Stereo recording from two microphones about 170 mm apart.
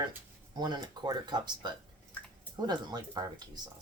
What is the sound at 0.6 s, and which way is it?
Speech, 25° right (ahead or behind).